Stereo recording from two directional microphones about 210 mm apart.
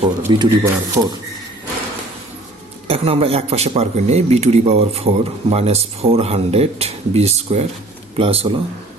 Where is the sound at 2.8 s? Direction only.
30° right (ahead or behind).